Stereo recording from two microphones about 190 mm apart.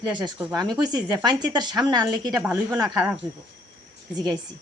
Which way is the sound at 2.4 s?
10° right (ahead or behind).